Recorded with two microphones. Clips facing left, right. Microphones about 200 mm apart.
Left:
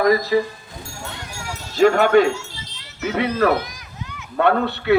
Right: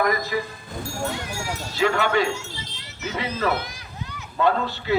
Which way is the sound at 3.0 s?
60° left (ahead or behind).